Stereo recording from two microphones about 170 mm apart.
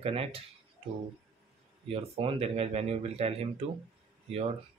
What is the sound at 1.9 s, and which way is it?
Speech, 35° right (ahead or behind).